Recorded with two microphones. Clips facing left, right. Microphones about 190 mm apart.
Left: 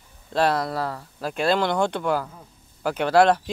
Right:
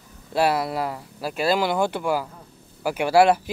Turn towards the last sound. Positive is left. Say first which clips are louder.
# right 1 dB
turn(degrees=-10)  # may be behind; listen again after turning